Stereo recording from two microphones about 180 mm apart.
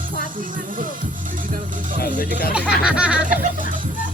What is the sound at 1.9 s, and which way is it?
Speech, 55° left (ahead or behind).